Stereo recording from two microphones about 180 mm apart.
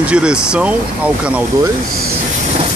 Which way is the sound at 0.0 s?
5° right (ahead or behind).